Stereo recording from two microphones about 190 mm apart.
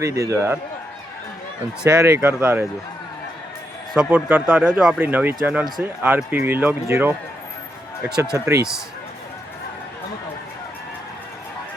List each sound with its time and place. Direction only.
0.0 s speech: 15° right (ahead or behind)
2.0 s speech: 15° right (ahead or behind)
3.9 s speech: 10° right (ahead or behind)
8.3 s speech: 15° right (ahead or behind)